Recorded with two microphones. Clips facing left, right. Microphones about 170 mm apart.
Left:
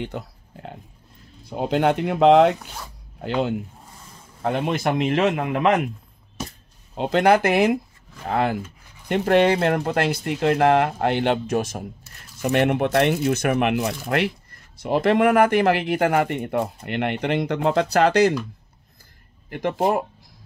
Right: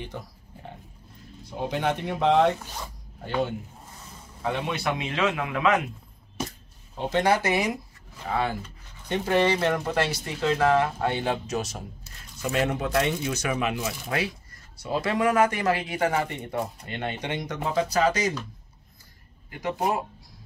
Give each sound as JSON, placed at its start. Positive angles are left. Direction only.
{"t": 0.0, "sound": "a sound", "side_deg": 75}
{"t": 1.5, "sound": "speech", "side_deg": 70}
{"t": 3.2, "sound": "speech", "side_deg": 65}
{"t": 4.4, "sound": "a man's voice", "side_deg": 50}
{"t": 7.0, "sound": "speech", "side_deg": 60}
{"t": 8.6, "sound": "a sound", "side_deg": 10}
{"t": 9.2, "sound": "speech", "side_deg": 60}